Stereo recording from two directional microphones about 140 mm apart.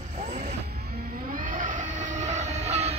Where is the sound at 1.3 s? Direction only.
70° right (ahead or behind); by 2.9 s 50° right (ahead or behind).